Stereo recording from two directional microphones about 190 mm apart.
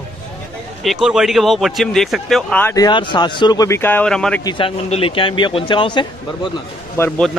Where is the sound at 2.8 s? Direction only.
25° left (ahead or behind); by 4.4 s 5° left (ahead or behind).